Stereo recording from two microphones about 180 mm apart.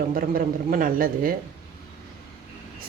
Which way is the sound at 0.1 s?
50° right (ahead or behind).